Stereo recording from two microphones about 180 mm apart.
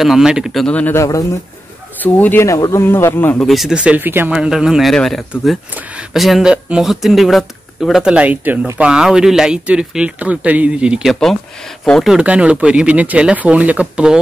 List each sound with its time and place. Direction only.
0.0 s speech: 5° right (ahead or behind)